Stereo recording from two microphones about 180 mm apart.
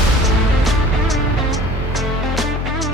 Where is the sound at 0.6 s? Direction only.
Centre (ahead or behind).